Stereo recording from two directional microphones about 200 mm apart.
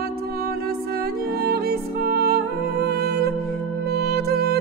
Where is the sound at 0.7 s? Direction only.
50° right (ahead or behind).